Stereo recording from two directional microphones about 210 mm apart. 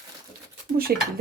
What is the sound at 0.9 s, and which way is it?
Speech, 45° right (ahead or behind).